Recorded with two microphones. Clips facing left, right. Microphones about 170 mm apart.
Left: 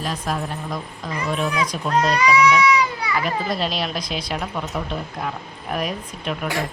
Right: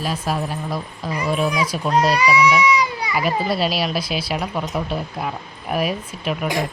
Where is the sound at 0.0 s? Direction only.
10° right (ahead or behind).